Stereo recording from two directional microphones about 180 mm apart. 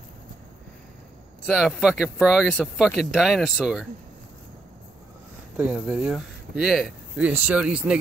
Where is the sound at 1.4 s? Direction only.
5° right (ahead or behind).